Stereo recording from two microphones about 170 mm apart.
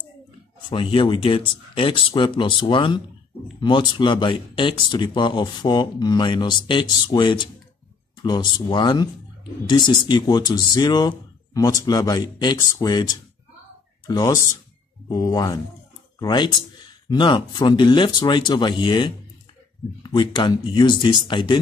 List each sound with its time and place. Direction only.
0.7 s speech: 30° left (ahead or behind)